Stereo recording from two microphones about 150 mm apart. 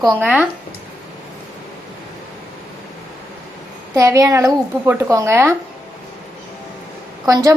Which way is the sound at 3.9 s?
20° right (ahead or behind).